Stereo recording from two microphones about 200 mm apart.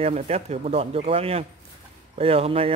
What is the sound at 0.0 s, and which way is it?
Speech, 35° right (ahead or behind).